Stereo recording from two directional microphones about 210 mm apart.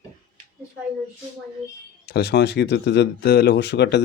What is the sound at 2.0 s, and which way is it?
Speech, 50° left (ahead or behind).